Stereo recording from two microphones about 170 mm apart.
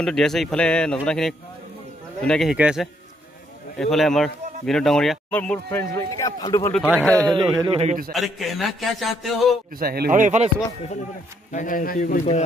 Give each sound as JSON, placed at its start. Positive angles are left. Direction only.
{"t": 0.0, "sound": "speech", "side_deg": 5}
{"t": 6.7, "sound": "speech", "side_deg": -5}
{"t": 7.3, "sound": "a man's voice", "side_deg": -25}
{"t": 7.8, "sound": "a man's voice", "side_deg": -50}
{"t": 8.1, "sound": "speech", "side_deg": 0}
{"t": 9.8, "sound": "a man's voice", "side_deg": -60}
{"t": 11.5, "sound": "a man's voice", "side_deg": 55}